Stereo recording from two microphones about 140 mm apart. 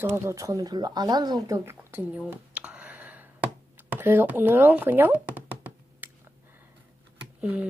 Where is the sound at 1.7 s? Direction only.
10° right (ahead or behind).